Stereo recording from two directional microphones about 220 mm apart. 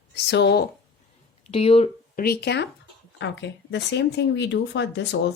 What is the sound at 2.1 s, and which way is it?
Speech, 45° left (ahead or behind).